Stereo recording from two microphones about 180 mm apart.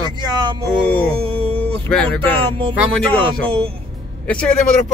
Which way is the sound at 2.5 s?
30° right (ahead or behind).